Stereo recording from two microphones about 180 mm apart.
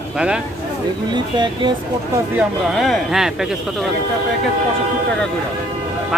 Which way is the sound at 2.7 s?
Centre (ahead or behind).